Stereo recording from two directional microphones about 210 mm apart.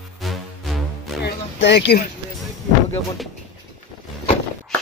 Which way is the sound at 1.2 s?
55° left (ahead or behind).